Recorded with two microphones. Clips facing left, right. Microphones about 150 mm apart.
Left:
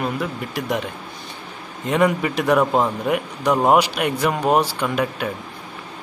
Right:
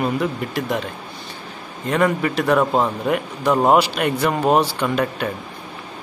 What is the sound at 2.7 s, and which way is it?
Speech, centre (ahead or behind).